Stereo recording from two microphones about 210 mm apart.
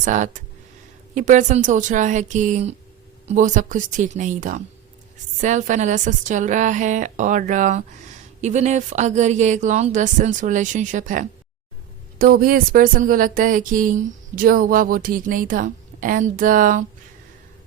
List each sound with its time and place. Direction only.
0.0 s speech: 35° right (ahead or behind)